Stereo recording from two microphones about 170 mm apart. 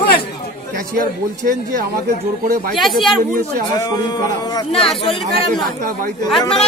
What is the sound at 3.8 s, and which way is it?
Speech, 20° left (ahead or behind).